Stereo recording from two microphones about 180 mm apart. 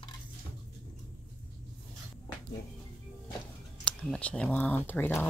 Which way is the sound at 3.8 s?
5° left (ahead or behind).